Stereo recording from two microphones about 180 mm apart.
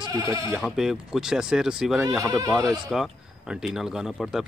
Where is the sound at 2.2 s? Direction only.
20° right (ahead or behind).